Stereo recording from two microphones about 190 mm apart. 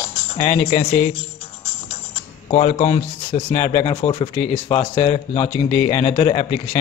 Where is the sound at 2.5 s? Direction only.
40° left (ahead or behind).